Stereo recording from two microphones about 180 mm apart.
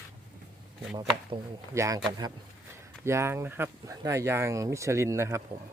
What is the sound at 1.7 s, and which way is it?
Speech, 15° right (ahead or behind).